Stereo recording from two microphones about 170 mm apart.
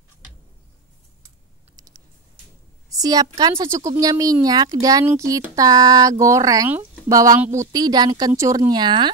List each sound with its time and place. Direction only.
2.9 s speech: 20° right (ahead or behind)